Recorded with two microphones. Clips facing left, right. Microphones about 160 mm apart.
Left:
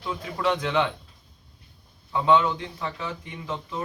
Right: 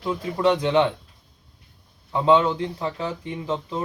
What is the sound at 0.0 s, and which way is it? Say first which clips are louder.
Speech: right 5 dB; 25° right (ahead or behind).